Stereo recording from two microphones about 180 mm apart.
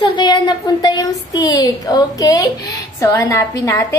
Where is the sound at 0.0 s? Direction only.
25° left (ahead or behind).